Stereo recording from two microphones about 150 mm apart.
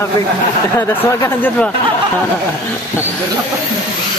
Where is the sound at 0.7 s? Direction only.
15° left (ahead or behind).